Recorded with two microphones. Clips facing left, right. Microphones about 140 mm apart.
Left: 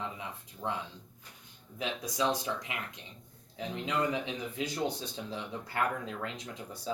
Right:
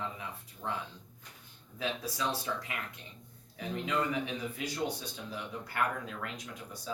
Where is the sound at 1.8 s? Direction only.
15° left (ahead or behind).